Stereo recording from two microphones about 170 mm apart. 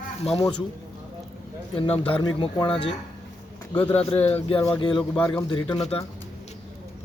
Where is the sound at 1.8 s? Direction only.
30° left (ahead or behind).